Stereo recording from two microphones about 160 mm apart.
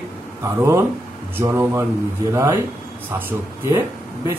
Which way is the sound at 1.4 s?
15° right (ahead or behind).